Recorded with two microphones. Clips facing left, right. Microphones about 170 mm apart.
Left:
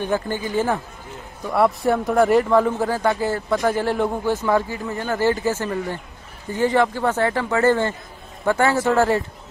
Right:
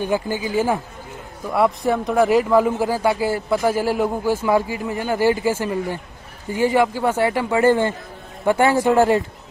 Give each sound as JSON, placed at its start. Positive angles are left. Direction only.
{"t": 0.0, "sound": "a man's voice", "side_deg": -10}